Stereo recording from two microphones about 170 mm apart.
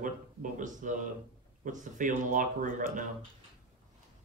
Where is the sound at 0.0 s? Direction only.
50° right (ahead or behind).